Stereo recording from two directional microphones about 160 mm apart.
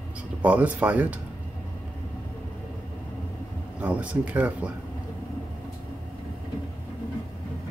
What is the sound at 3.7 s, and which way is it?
Speech, 10° right (ahead or behind).